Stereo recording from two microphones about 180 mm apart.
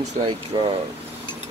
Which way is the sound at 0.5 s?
25° right (ahead or behind).